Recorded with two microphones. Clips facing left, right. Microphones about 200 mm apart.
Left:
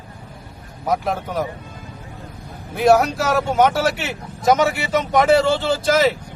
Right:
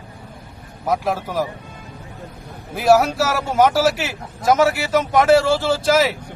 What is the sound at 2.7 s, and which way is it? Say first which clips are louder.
Speech: even; 5° right (ahead or behind).